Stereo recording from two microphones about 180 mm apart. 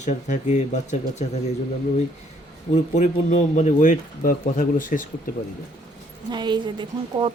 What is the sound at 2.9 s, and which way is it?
A man's voice, 40° left (ahead or behind).